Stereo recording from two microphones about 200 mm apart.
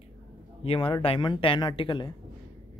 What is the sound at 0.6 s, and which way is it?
Speech, 25° left (ahead or behind).